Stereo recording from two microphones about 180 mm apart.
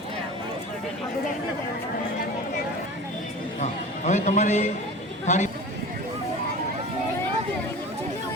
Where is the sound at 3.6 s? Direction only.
40° left (ahead or behind).